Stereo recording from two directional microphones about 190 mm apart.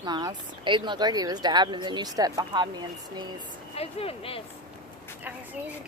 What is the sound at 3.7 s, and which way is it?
Speech, 30° left (ahead or behind).